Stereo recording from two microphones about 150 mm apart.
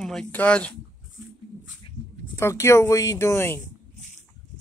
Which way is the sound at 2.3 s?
20° left (ahead or behind).